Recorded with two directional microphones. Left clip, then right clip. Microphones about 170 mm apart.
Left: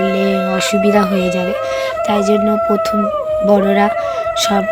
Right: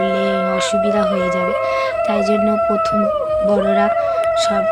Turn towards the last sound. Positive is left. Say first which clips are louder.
# left 3 dB
turn(degrees=20)  # may be behind; listen again after turning